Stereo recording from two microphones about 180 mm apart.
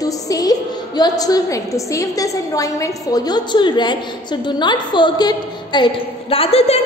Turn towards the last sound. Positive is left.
turn(degrees=35)  # may be behind; listen again after turning